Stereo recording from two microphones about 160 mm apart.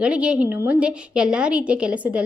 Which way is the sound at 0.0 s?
5° right (ahead or behind).